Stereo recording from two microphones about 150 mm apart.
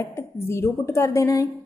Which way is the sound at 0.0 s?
15° left (ahead or behind).